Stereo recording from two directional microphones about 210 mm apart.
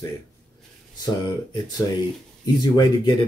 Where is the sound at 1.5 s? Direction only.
20° left (ahead or behind).